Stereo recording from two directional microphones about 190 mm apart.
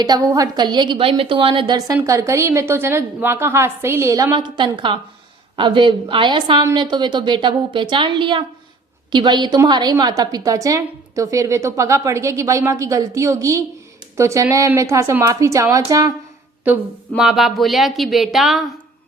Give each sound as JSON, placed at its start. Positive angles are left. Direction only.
{"t": 0.0, "sound": "a woman's voice", "side_deg": -20}
{"t": 17.2, "sound": "speech", "side_deg": 0}